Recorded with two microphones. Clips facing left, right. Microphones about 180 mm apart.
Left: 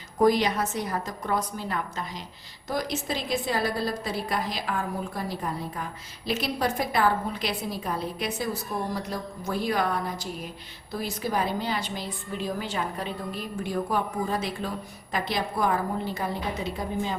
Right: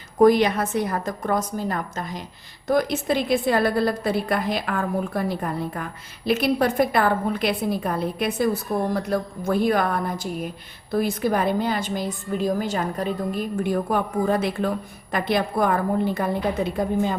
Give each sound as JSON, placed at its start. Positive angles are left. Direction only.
{"t": 0.2, "sound": "a woman's voice", "side_deg": -55}